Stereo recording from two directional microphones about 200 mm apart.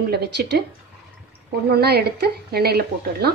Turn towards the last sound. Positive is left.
turn(degrees=-50)  # may be behind; listen again after turning